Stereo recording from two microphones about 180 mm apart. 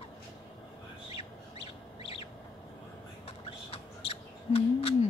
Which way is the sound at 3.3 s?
35° left (ahead or behind).